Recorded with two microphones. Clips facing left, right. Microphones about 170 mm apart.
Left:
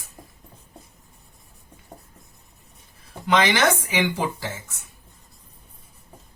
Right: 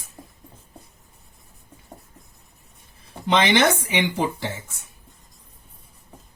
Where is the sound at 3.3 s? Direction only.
25° right (ahead or behind).